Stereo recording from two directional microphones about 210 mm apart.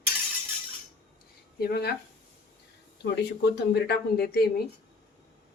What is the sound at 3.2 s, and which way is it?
Speech, 50° left (ahead or behind).